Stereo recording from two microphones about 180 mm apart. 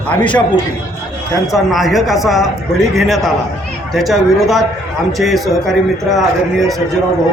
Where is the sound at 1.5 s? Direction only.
Centre (ahead or behind).